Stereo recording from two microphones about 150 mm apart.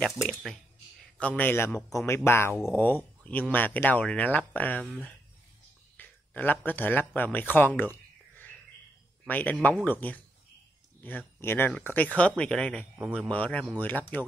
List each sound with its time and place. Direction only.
0.2 s speech: centre (ahead or behind)
1.2 s speech: 10° left (ahead or behind)
5.9 s speech: 10° left (ahead or behind)